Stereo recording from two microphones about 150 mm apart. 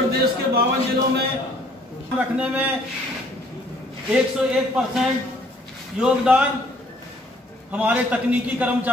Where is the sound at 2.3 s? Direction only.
10° right (ahead or behind).